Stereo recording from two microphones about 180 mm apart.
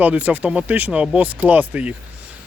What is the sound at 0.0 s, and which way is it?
Speech, 10° right (ahead or behind).